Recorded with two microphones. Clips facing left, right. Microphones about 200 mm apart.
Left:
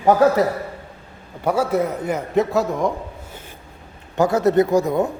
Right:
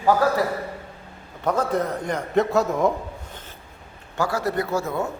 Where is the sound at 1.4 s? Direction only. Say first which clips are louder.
Left 3 dB; 10° left (ahead or behind).